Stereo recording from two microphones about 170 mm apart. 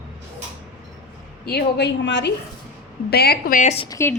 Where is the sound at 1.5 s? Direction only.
80° left.